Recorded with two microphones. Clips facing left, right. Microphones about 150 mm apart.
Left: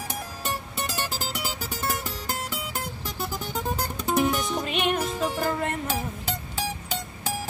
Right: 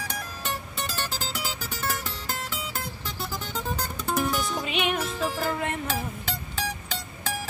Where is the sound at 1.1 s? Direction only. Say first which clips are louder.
Left 1 dB; 40° left (ahead or behind).